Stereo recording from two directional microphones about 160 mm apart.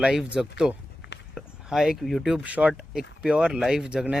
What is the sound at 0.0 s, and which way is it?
Speech, 5° right (ahead or behind).